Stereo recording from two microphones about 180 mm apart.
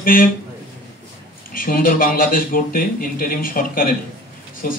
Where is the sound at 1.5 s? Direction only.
50° left (ahead or behind).